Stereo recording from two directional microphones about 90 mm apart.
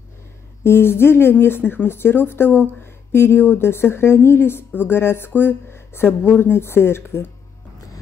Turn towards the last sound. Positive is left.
turn(degrees=25)  # may be behind; listen again after turning